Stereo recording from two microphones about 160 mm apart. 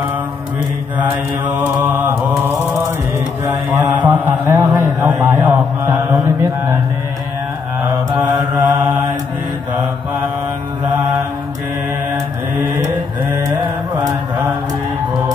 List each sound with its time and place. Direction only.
1.6 s mantra: 10° right (ahead or behind)
8.5 s mantra: 10° right (ahead or behind)
13.9 s mantra: 20° right (ahead or behind)